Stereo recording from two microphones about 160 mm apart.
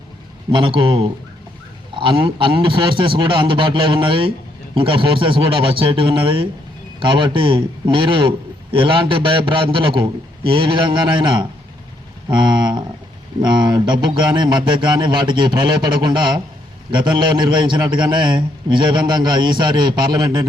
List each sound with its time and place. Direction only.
0.5 s a man's voice: 30° right (ahead or behind)